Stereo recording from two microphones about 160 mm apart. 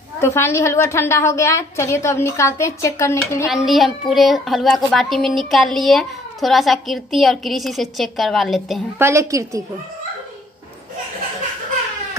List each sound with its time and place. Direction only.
0.2 s a woman's voice: 15° left (ahead or behind)
3.4 s a woman's voice: centre (ahead or behind)
8.9 s a woman's voice: 15° right (ahead or behind)